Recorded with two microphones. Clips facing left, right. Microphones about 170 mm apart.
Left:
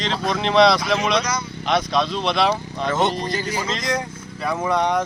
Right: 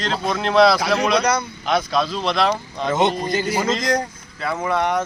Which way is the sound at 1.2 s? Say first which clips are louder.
Right 4 dB; 60° right (ahead or behind).